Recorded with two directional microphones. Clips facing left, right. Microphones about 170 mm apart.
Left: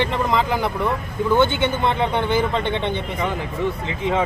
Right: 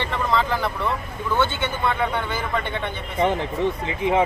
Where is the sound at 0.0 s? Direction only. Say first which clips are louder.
Left 3 dB; 15° left (ahead or behind).